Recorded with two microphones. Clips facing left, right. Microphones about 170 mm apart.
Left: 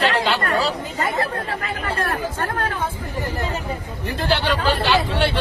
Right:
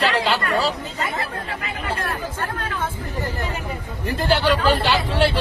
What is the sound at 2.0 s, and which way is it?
Chatter, 55° left (ahead or behind).